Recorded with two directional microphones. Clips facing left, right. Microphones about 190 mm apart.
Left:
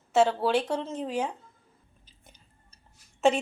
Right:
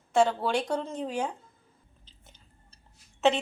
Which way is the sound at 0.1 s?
5° left (ahead or behind).